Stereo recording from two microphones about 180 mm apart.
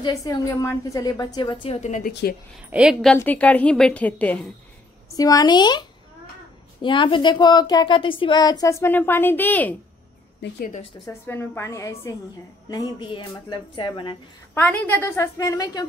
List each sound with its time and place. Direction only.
0.0 s a woman's voice: 20° left (ahead or behind); by 2.3 s 45° left (ahead or behind)
2.7 s a woman's voice: 5° right (ahead or behind)
5.1 s a woman's voice: 20° left (ahead or behind)
11.1 s a woman's voice: 10° left (ahead or behind)
14.5 s a woman's voice: 10° left (ahead or behind)